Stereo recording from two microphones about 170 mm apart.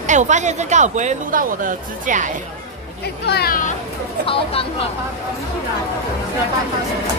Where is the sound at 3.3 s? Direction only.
60° left (ahead or behind).